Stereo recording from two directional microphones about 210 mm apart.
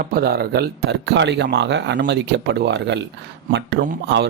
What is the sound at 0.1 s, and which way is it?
Speech, 50° right (ahead or behind).